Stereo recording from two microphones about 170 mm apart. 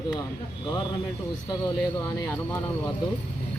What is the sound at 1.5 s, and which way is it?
Speech, 20° left (ahead or behind).